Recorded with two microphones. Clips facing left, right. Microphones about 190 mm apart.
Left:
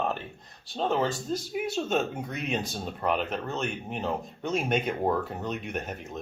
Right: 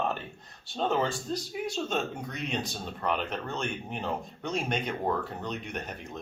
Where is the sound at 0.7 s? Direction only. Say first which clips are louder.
Left 1 dB; centre (ahead or behind).